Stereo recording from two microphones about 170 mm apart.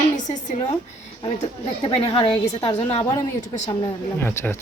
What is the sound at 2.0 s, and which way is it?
A woman's voice, 30° left (ahead or behind).